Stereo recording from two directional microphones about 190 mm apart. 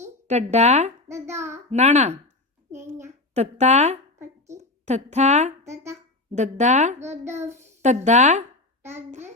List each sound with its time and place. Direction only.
0.3 s speech: 35° right (ahead or behind)
1.0 s child singing: 15° right (ahead or behind)
1.7 s speech: 35° right (ahead or behind)
3.3 s a woman's voice: 35° right (ahead or behind)
5.7 s a sound: 15° right (ahead or behind)
6.3 s speech: 40° right (ahead or behind)
7.0 s a child's voice: 15° right (ahead or behind)
7.8 s speech: 40° right (ahead or behind)
8.8 s a child's voice: 10° right (ahead or behind)